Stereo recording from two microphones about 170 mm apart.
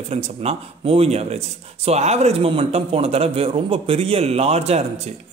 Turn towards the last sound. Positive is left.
turn(degrees=-40)  # may be behind; listen again after turning